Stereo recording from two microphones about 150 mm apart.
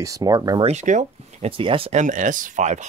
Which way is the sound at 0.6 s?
50° right (ahead or behind).